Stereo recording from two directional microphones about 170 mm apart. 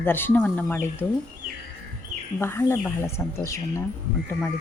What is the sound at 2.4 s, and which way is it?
A woman's voice, 15° left (ahead or behind).